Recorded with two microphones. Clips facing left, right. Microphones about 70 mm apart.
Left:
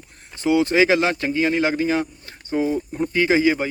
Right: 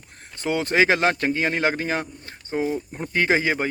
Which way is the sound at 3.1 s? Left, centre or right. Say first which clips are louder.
Left 3 dB; right.